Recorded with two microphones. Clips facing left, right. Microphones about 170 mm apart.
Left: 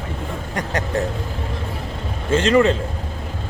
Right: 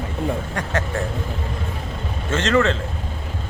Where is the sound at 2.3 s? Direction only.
10° left (ahead or behind).